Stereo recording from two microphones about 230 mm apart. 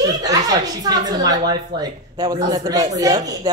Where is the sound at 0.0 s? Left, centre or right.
Centre.